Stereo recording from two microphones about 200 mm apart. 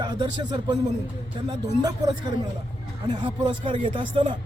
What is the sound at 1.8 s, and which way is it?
A man's voice, 20° right (ahead or behind).